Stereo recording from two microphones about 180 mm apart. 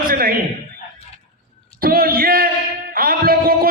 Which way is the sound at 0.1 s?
50° right (ahead or behind).